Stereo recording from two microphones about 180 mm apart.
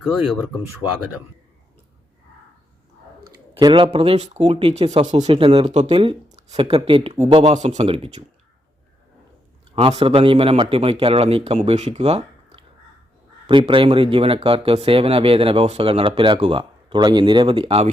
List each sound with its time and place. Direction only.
3.5 s speech: 25° right (ahead or behind)
9.7 s speech: 30° right (ahead or behind)